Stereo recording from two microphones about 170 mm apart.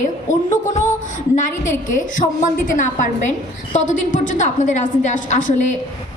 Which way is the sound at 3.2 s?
45° left (ahead or behind).